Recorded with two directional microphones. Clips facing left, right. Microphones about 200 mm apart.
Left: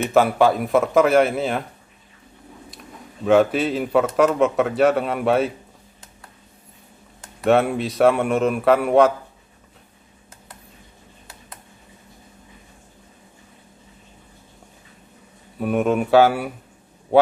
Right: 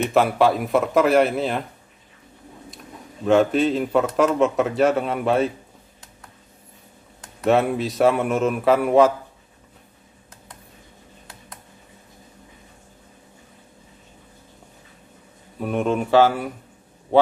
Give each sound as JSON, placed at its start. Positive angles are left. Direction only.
{"t": 0.0, "sound": "a man's voice", "side_deg": 0}
{"t": 3.3, "sound": "a man's voice", "side_deg": 5}
{"t": 7.2, "sound": "a man's voice", "side_deg": 0}
{"t": 15.6, "sound": "speech", "side_deg": 5}